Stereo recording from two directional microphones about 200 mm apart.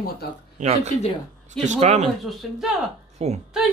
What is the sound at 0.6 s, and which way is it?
Speech, 35° right (ahead or behind).